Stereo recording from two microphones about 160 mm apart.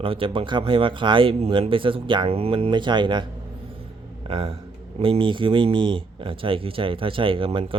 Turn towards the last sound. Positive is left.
turn(degrees=-35)  # may be behind; listen again after turning